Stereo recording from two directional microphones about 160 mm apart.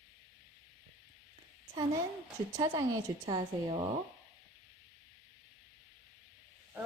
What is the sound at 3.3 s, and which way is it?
Speech, 30° right (ahead or behind).